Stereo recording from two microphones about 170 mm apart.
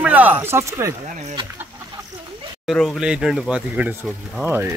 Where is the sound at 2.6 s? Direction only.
Centre (ahead or behind).